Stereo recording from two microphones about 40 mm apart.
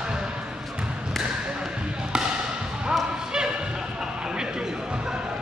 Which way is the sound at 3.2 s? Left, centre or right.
Centre.